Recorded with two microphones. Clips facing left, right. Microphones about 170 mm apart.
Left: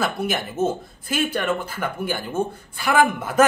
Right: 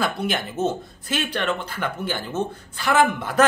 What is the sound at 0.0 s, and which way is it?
A woman's voice, 5° left (ahead or behind).